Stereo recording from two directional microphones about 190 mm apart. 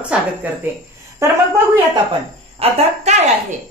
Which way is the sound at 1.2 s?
15° right (ahead or behind).